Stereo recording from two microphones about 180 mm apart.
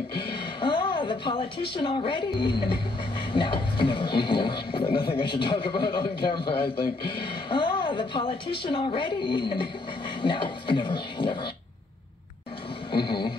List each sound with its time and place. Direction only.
0.6 s a woman's voice: 25° left (ahead or behind)
12.9 s speech: 25° left (ahead or behind)